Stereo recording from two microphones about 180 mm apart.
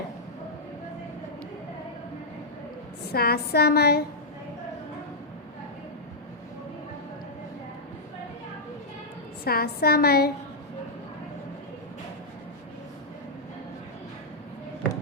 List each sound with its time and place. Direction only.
3.1 s a woman's voice: 60° left (ahead or behind)
9.4 s a woman's voice: 60° left (ahead or behind)